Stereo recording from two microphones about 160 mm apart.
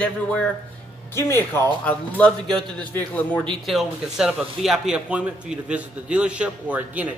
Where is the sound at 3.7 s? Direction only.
Centre (ahead or behind).